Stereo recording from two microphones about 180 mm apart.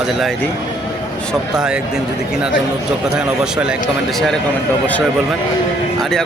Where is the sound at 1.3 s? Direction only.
5° right (ahead or behind).